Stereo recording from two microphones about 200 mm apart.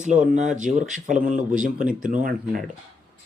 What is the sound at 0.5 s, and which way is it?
Speech, 40° right (ahead or behind).